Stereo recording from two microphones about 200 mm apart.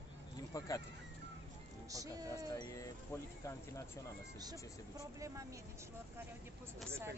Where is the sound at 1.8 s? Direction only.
15° right (ahead or behind).